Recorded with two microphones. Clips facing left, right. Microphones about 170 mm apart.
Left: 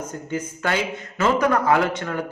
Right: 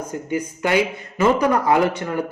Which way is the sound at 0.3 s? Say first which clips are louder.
Right 4 dB; 15° right (ahead or behind).